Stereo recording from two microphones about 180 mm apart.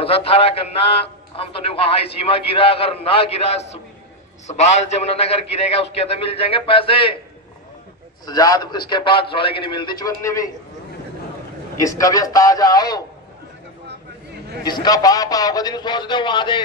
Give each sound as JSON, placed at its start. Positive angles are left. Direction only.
{"t": 0.0, "sound": "a man's voice", "side_deg": 30}
{"t": 8.3, "sound": "a man's voice", "side_deg": 20}
{"t": 11.8, "sound": "a man's voice", "side_deg": 20}
{"t": 14.6, "sound": "a man's voice", "side_deg": 20}